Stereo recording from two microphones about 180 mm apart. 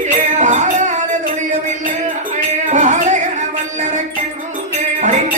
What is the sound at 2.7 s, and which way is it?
Music, 40° right (ahead or behind).